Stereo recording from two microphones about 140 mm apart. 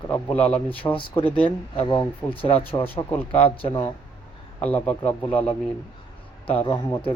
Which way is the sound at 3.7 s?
20° left (ahead or behind).